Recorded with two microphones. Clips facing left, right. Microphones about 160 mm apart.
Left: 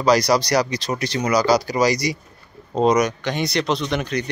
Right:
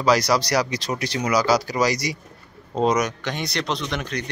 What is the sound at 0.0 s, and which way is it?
Speech, 5° right (ahead or behind).